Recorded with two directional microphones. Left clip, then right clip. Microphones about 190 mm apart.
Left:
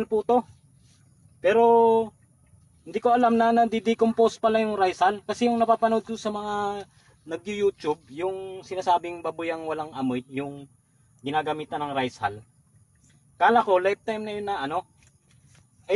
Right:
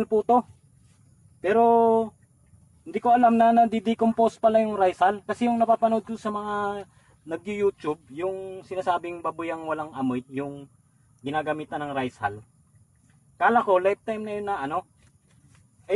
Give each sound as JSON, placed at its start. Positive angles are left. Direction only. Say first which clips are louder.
{"t": 0.0, "sound": "speech", "louder": "right 2 dB", "side_deg": -35}
{"t": 1.7, "sound": "a man's voice", "louder": "left 1 dB", "side_deg": -35}
{"t": 13.4, "sound": "speech", "louder": "left 1 dB", "side_deg": -10}